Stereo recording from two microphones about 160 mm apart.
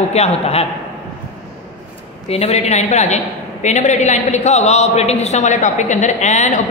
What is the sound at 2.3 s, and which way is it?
A woman's voice, 40° left (ahead or behind).